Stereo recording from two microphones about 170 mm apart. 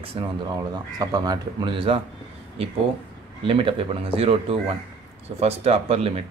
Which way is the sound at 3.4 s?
30° right (ahead or behind).